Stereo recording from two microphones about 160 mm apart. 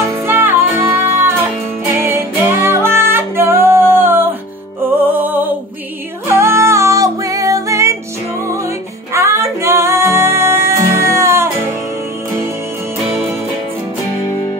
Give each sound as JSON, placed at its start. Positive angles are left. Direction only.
{"t": 0.0, "sound": "music", "side_deg": -15}
{"t": 9.1, "sound": "music", "side_deg": -15}